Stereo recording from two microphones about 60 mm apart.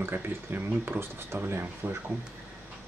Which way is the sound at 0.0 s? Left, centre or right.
Right.